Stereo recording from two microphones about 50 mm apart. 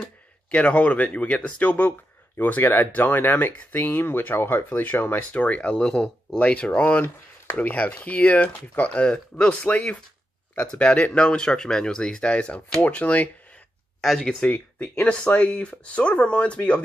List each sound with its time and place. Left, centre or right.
0.5 s speech: left
14.0 s speech: centre
15.0 s speech: left